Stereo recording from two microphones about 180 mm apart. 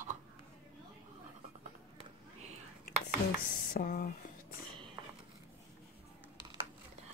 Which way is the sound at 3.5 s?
50° left (ahead or behind).